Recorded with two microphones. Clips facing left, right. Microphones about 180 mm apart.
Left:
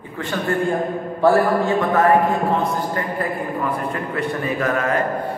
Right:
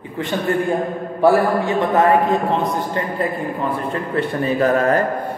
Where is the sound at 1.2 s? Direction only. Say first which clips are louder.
Right 1 dB; 20° right (ahead or behind).